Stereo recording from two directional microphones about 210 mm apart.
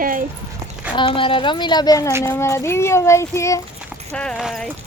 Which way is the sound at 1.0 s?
25° left (ahead or behind).